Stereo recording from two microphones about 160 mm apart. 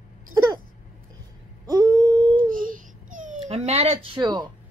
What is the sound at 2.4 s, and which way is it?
Baby cry, 60° right (ahead or behind).